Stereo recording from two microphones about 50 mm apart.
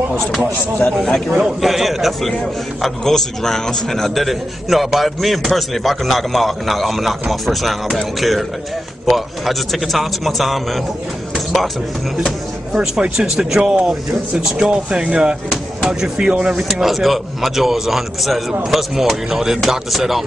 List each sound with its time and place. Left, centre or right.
1.0 s a man's voice: centre
1.4 s a man's voice: centre
11.3 s music: centre
12.7 s speech: centre
15.5 s a sound: centre
16.3 s speech: centre
16.6 s a man's voice: centre